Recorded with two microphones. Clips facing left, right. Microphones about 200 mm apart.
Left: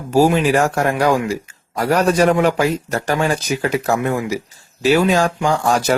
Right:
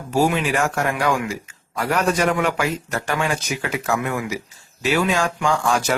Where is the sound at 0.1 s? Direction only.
35° left (ahead or behind).